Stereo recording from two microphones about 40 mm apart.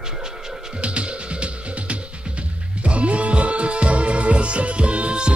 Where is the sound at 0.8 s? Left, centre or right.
Right.